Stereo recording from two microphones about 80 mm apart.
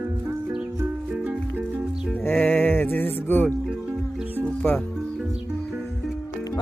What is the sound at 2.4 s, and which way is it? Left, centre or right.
Music, left.